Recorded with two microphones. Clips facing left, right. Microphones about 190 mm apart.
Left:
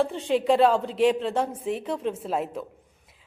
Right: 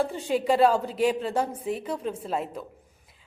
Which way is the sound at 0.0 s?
Centre (ahead or behind).